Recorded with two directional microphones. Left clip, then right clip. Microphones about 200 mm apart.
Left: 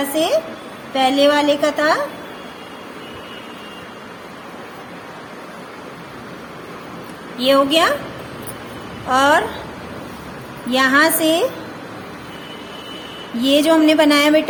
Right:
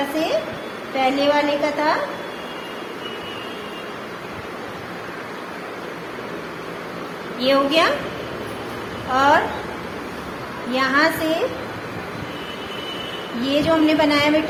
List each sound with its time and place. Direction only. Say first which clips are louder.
0.2 s a sound: left 6 dB; 40° left (ahead or behind)
0.9 s a woman's voice: left 4 dB; 40° left (ahead or behind)
7.3 s a woman's voice: left 3 dB; 40° left (ahead or behind)
9.1 s a woman's voice: left 2 dB; 45° left (ahead or behind)
10.7 s a woman's voice: left 4 dB; 45° left (ahead or behind)
13.4 s a woman's voice: left 5 dB; 45° left (ahead or behind)